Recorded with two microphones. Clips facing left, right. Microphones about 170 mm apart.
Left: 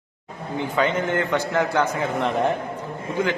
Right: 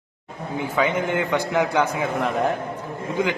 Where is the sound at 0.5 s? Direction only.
10° right (ahead or behind).